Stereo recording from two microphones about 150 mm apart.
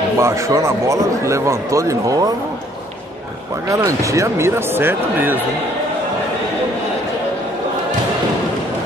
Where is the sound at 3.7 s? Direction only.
20° right (ahead or behind).